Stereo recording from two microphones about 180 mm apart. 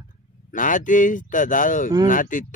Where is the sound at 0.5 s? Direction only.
45° left (ahead or behind).